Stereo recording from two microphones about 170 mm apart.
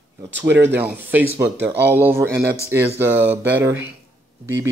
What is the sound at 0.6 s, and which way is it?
Speech, 10° right (ahead or behind).